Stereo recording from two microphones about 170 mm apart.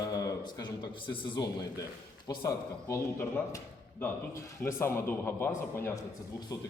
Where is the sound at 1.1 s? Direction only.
30° left (ahead or behind).